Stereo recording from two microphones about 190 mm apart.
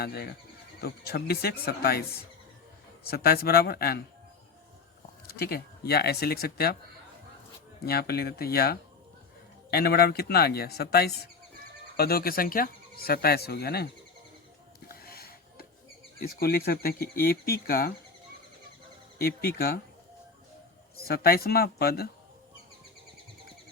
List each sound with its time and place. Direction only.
0.0 s speech: 55° left (ahead or behind)
3.1 s speech: 50° left (ahead or behind)
5.3 s speech: 55° left (ahead or behind)
7.9 s speech: 55° left (ahead or behind)
14.8 s a sound: 55° left (ahead or behind)
16.2 s speech: 55° left (ahead or behind)
19.2 s speech: 50° left (ahead or behind)
21.0 s speech: 55° left (ahead or behind)